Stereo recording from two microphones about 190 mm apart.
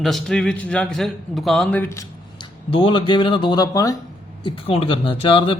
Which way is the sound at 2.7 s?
25° left (ahead or behind).